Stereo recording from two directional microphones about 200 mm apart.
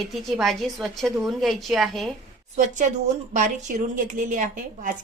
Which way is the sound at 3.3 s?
40° right (ahead or behind).